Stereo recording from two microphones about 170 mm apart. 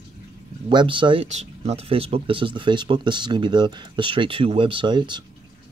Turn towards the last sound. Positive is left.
turn(degrees=-25)  # may be behind; listen again after turning